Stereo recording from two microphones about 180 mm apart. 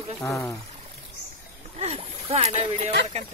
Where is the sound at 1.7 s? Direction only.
35° right (ahead or behind).